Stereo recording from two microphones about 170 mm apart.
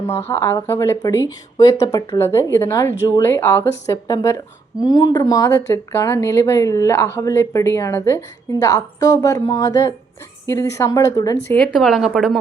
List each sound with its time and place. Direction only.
0.1 s speech: 15° left (ahead or behind)
11.4 s speech: 5° left (ahead or behind)